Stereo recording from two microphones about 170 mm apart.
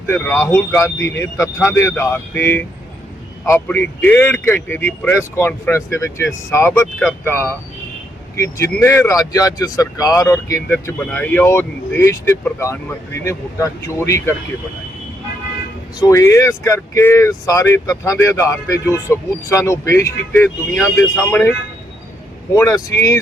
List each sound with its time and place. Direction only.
0.1 s speech: 15° left (ahead or behind)
16.0 s speech: 20° left (ahead or behind)
22.5 s speech: 20° left (ahead or behind)